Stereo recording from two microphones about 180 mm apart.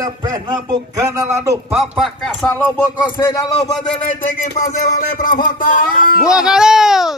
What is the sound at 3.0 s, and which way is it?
Speech, 25° left (ahead or behind).